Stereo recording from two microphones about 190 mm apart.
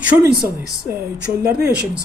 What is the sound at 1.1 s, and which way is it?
Speech, 65° right (ahead or behind).